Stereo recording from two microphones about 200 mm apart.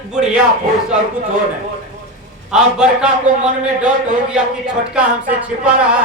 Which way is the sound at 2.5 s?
5° right (ahead or behind).